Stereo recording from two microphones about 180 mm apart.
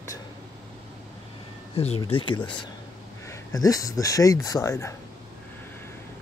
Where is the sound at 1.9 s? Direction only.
30° left (ahead or behind).